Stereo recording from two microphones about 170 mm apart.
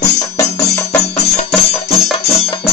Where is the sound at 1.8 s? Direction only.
35° left (ahead or behind).